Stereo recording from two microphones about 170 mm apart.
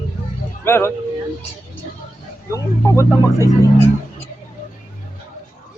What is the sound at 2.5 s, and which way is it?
Speech, 15° left (ahead or behind).